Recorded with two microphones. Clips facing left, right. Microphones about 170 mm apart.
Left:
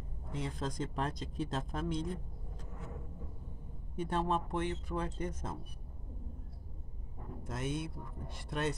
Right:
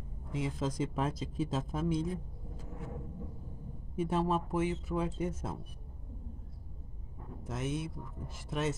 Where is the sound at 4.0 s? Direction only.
5° right (ahead or behind).